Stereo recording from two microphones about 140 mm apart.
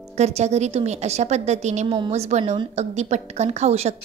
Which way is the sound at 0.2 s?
50° right (ahead or behind).